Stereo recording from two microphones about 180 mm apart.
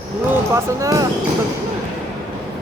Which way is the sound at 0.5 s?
20° right (ahead or behind).